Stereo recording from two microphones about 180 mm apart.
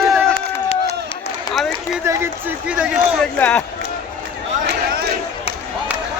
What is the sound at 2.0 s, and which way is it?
Speech, 10° right (ahead or behind).